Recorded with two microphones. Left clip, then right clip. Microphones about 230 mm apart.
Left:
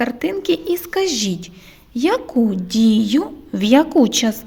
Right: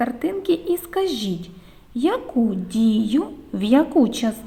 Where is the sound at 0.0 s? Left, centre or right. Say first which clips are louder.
Left 3 dB; left.